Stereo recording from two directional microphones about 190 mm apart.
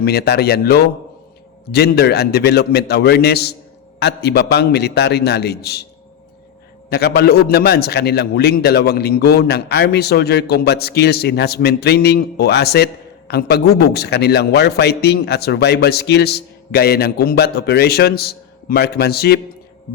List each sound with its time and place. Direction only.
0.0 s a man's voice: 60° left (ahead or behind)
6.9 s a man's voice: 55° left (ahead or behind)